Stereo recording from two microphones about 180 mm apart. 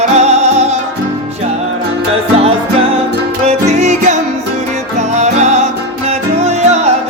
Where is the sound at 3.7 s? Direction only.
40° right (ahead or behind).